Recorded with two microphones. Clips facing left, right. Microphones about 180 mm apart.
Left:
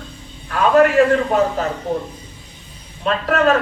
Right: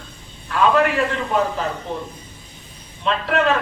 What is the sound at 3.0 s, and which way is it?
Speech, 45° left (ahead or behind).